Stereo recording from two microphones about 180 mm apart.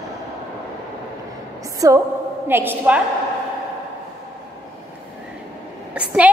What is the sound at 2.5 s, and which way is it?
Speech, 10° right (ahead or behind).